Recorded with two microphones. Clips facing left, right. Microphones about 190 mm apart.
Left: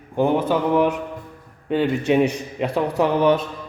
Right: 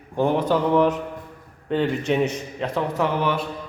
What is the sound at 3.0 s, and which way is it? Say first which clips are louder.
Music: left 7 dB; 20° left (ahead or behind).